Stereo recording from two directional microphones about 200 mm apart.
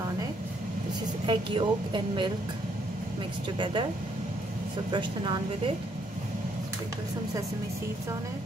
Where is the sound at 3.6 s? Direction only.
25° right (ahead or behind).